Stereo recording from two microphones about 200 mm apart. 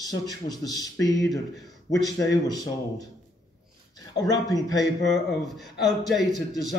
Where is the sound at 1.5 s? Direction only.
Centre (ahead or behind).